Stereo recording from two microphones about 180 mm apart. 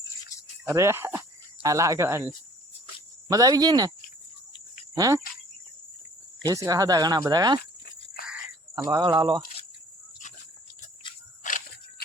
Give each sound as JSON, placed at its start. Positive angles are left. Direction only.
{"t": 0.6, "sound": "speech", "side_deg": -15}
{"t": 4.9, "sound": "speech", "side_deg": -20}
{"t": 6.5, "sound": "speech", "side_deg": -20}
{"t": 11.4, "sound": "a sound", "side_deg": 50}